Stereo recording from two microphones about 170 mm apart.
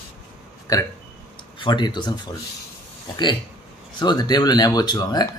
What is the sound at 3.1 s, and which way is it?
A man's voice, 25° left (ahead or behind).